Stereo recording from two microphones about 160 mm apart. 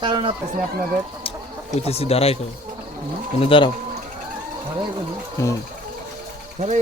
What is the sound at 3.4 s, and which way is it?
Speech, 35° left (ahead or behind).